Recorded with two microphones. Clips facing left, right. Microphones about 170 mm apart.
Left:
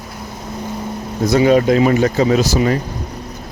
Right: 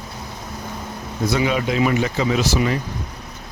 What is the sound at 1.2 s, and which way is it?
Speech, 40° left (ahead or behind).